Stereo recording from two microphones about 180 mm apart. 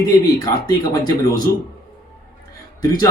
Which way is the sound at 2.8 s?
20° left (ahead or behind).